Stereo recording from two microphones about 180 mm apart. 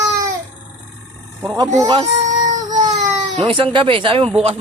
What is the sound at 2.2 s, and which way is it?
Child singing, 40° right (ahead or behind).